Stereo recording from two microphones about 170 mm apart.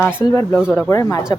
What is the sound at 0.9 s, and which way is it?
Speech, 20° left (ahead or behind).